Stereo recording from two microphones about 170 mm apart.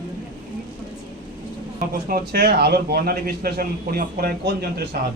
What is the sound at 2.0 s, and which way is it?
A man's voice, 60° right (ahead or behind).